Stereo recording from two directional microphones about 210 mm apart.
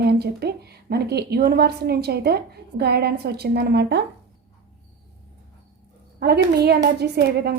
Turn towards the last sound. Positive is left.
turn(degrees=-50)  # may be behind; listen again after turning